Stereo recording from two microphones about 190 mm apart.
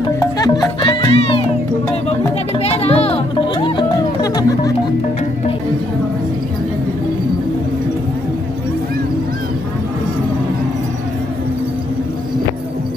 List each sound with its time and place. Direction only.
0.2 s music: 20° left (ahead or behind)
2.6 s music: 35° left (ahead or behind)